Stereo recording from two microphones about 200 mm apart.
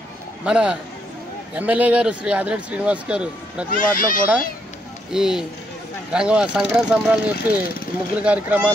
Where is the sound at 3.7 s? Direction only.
45° left (ahead or behind).